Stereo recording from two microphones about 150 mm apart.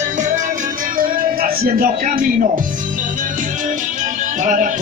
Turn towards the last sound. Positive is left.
turn(degrees=-55)  # may be behind; listen again after turning